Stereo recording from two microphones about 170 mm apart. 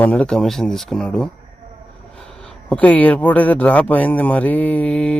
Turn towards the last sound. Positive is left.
turn(degrees=5)  # may be behind; listen again after turning